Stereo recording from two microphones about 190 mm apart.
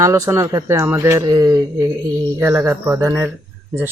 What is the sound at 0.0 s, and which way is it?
Speech, 15° right (ahead or behind).